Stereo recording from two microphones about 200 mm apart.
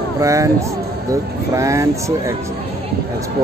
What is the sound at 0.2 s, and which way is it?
Speech, 15° right (ahead or behind).